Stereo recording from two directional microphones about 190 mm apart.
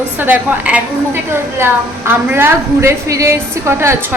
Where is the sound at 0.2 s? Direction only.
5° right (ahead or behind).